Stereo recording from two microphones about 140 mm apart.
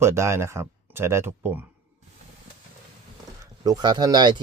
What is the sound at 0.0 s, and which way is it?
Speech, 20° right (ahead or behind).